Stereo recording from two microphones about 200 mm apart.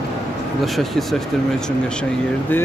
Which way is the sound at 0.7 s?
Centre (ahead or behind).